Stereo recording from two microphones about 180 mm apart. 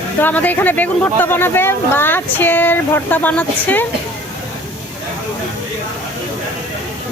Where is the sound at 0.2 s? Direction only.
10° left (ahead or behind).